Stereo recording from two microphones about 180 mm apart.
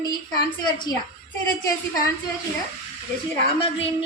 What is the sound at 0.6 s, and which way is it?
Speech, 25° left (ahead or behind).